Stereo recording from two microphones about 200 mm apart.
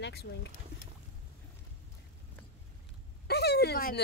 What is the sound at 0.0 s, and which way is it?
Speech, 55° left (ahead or behind).